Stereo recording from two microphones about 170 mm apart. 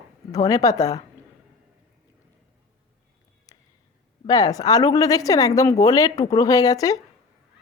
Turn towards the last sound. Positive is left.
turn(degrees=20)  # may be behind; listen again after turning